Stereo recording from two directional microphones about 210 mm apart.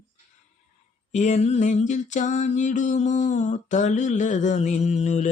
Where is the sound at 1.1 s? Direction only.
35° left (ahead or behind).